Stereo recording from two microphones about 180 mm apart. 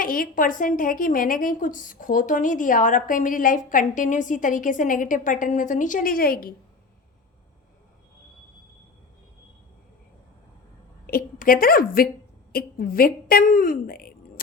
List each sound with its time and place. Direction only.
0.0 s a woman's voice: 50° left (ahead or behind)
11.0 s a woman's voice: 55° left (ahead or behind)